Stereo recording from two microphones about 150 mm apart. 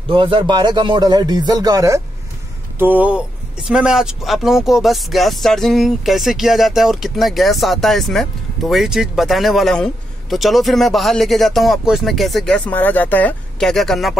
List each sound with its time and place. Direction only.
0.1 s speech: 35° right (ahead or behind)
2.8 s speech: 10° right (ahead or behind)